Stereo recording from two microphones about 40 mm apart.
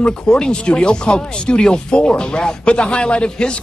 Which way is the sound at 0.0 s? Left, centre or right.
Left.